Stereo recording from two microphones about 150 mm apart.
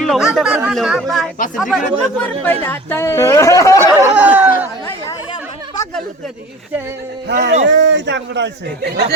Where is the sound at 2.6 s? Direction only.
15° left (ahead or behind).